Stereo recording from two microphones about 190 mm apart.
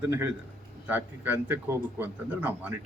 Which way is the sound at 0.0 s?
10° right (ahead or behind).